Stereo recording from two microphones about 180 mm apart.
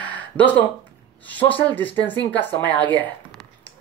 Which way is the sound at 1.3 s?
10° left (ahead or behind).